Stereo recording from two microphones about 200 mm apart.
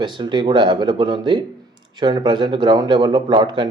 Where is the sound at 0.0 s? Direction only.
25° right (ahead or behind).